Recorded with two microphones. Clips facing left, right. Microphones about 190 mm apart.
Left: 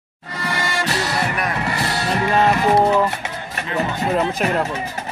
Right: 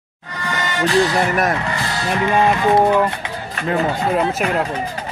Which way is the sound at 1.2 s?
45° right (ahead or behind).